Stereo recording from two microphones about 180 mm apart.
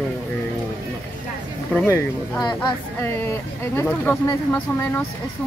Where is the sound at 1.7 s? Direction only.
10° left (ahead or behind).